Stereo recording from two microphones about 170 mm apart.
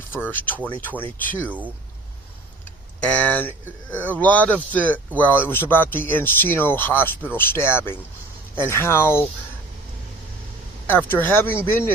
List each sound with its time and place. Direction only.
0.1 s speech: 10° left (ahead or behind)
3.0 s speech: 10° left (ahead or behind)
10.8 s speech: 10° left (ahead or behind)